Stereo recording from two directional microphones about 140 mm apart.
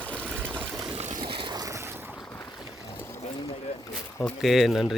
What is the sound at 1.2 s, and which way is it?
Boat, 35° right (ahead or behind).